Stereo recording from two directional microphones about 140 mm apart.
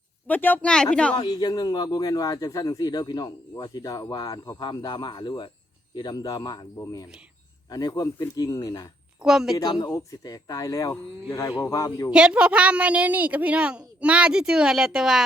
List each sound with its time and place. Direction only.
0.3 s speech: 10° left (ahead or behind)
1.1 s a man's voice: 30° left (ahead or behind)
9.2 s a woman's voice: centre (ahead or behind)
9.6 s a man's voice: 25° left (ahead or behind)
12.1 s a woman's voice: 5° right (ahead or behind)